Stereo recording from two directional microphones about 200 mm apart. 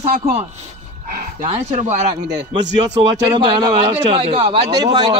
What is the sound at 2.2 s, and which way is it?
Speech, 20° right (ahead or behind).